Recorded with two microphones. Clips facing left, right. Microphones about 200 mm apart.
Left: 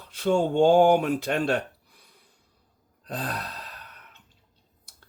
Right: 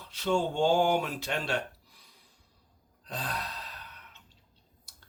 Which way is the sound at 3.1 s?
50° left (ahead or behind).